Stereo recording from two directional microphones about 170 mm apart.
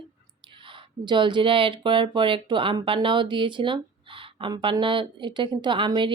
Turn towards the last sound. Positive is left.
turn(degrees=-30)  # may be behind; listen again after turning